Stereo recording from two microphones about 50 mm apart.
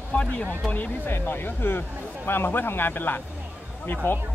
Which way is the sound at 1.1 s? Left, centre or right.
Left.